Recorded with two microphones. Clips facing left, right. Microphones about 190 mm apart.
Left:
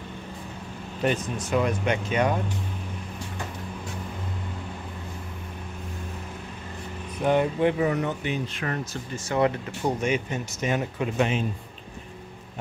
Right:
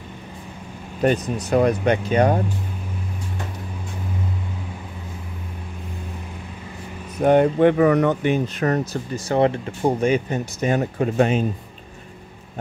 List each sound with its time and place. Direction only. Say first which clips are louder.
1.0 s speech: right 6 dB; 35° right (ahead or behind)
7.2 s speech: right 7 dB; 55° right (ahead or behind); by 8.2 s 90° right
8.2 s speech: right 9 dB; 45° right (ahead or behind)